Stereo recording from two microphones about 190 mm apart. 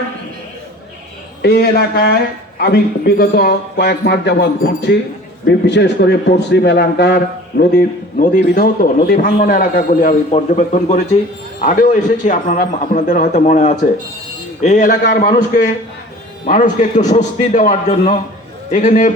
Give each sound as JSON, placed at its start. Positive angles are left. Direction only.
{"t": 1.4, "sound": "a man's voice", "side_deg": 60}